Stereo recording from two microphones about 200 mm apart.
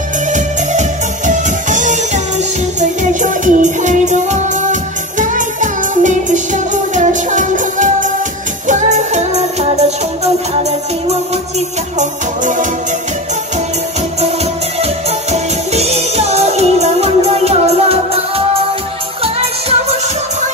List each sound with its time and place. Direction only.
0.3 s music: 40° right (ahead or behind)
12.0 s music: 40° right (ahead or behind)
14.2 s music: 30° right (ahead or behind)